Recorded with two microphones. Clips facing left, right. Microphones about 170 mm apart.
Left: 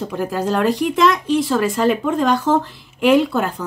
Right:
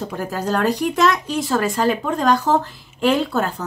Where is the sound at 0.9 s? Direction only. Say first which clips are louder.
Left 3 dB; 45° right (ahead or behind).